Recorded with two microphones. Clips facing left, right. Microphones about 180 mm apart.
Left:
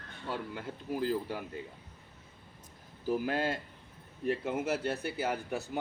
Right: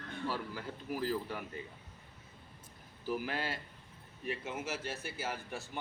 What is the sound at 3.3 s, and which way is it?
Speech, 50° left (ahead or behind).